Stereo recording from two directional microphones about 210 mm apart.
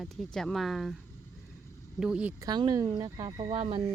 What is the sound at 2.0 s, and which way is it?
Speech, 5° right (ahead or behind).